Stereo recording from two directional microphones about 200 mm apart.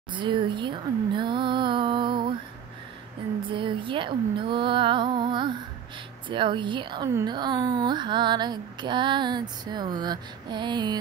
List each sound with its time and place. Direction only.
0.1 s speech: 25° right (ahead or behind)
3.4 s a woman's voice: 25° right (ahead or behind)